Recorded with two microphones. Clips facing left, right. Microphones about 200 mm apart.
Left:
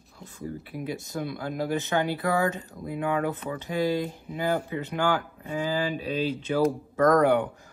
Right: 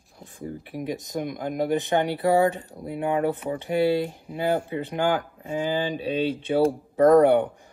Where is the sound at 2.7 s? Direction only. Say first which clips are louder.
Right 2 dB; 35° right (ahead or behind).